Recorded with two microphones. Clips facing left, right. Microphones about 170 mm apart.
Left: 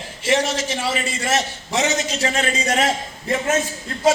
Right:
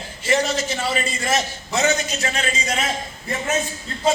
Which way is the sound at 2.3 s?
45° left (ahead or behind).